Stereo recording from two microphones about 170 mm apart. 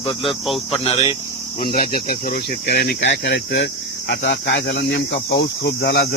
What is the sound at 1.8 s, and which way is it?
Speech, 55° left (ahead or behind).